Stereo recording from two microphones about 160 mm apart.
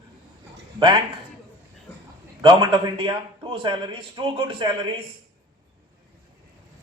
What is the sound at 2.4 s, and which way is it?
A man's voice, 30° right (ahead or behind).